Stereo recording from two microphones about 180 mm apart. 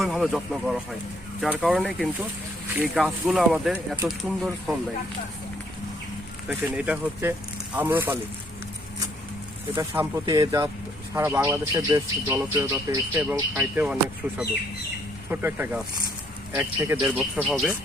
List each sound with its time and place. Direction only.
0.0 s speech: centre (ahead or behind)
3.2 s speech: 5° right (ahead or behind)
6.5 s speech: 10° right (ahead or behind)
9.7 s speech: 15° right (ahead or behind)
17.2 s speech: centre (ahead or behind)